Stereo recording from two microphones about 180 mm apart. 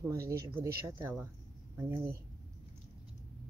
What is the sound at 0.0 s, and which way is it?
Speech, 15° right (ahead or behind).